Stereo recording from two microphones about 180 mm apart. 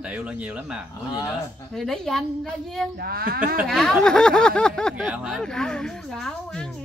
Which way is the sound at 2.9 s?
60° right (ahead or behind).